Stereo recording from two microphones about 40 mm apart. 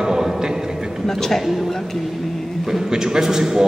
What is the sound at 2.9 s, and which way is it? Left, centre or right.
Speech, centre.